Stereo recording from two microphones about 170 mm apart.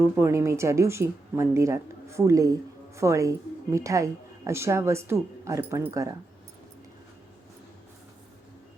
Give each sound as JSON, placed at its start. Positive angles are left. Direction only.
{"t": 0.0, "sound": "speech", "side_deg": -15}